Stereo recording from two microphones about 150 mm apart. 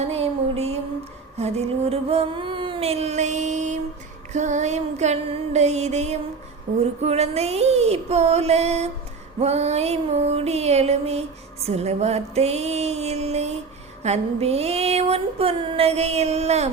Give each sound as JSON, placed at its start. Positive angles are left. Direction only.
{"t": 0.0, "sound": "music", "side_deg": -45}
{"t": 1.4, "sound": "a sound", "side_deg": -45}
{"t": 4.3, "sound": "music", "side_deg": -50}
{"t": 6.7, "sound": "female singing", "side_deg": -60}
{"t": 7.0, "sound": "music", "side_deg": -45}